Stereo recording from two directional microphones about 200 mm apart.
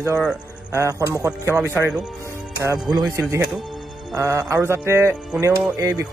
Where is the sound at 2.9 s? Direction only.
15° right (ahead or behind).